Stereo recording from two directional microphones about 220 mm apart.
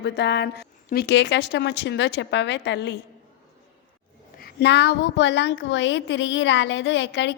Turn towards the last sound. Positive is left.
turn(degrees=55)  # may be behind; listen again after turning